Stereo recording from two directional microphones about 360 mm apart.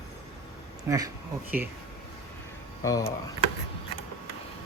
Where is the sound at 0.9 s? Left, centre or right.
Centre.